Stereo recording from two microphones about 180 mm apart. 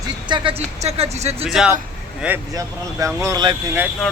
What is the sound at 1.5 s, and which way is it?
Speech, centre (ahead or behind).